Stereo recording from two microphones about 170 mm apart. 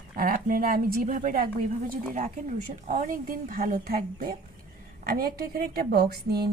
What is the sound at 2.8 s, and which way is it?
A woman's voice, 45° right (ahead or behind).